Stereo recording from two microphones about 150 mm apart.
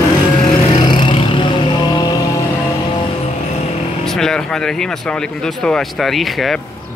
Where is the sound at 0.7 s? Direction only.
30° left (ahead or behind).